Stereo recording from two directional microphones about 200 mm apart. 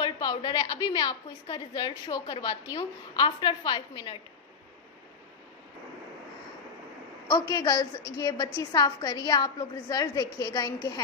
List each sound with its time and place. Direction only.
0.0 s a woman's voice: 20° left (ahead or behind)
7.2 s a woman's voice: 15° left (ahead or behind)